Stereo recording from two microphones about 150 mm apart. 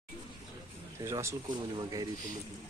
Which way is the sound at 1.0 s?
20° right (ahead or behind).